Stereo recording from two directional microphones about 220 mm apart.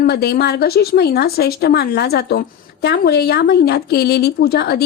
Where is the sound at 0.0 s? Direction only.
45° left (ahead or behind).